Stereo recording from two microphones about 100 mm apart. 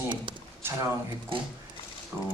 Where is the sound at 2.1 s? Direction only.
20° right (ahead or behind).